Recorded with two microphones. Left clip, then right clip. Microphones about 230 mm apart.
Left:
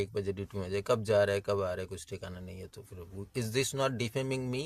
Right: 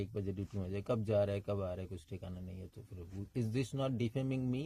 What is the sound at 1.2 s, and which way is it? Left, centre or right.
Speech, left.